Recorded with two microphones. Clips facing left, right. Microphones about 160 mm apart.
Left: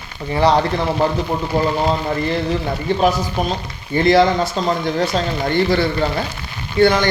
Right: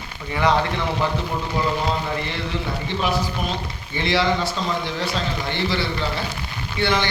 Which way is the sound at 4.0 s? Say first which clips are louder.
Left 8 dB; 45° left (ahead or behind).